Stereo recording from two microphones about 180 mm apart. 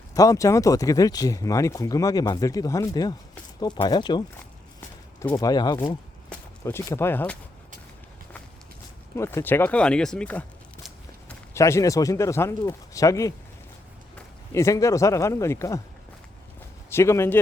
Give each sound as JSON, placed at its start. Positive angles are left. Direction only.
{"t": 0.1, "sound": "speech", "side_deg": 20}
{"t": 5.3, "sound": "speech", "side_deg": 20}
{"t": 9.1, "sound": "speech", "side_deg": 15}
{"t": 11.5, "sound": "speech", "side_deg": 15}
{"t": 14.5, "sound": "speech", "side_deg": 15}
{"t": 16.9, "sound": "speech", "side_deg": 15}